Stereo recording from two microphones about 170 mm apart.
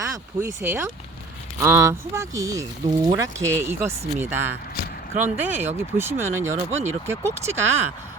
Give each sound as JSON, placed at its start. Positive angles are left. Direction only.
{"t": 0.0, "sound": "speech", "side_deg": -15}